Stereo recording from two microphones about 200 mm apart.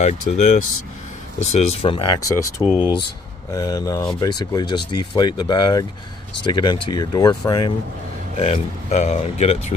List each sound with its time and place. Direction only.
0.0 s speech: 35° left (ahead or behind)
8.4 s speech: 35° left (ahead or behind)